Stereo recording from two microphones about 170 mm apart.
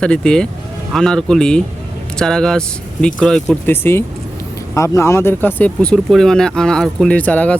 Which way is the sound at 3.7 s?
15° left (ahead or behind).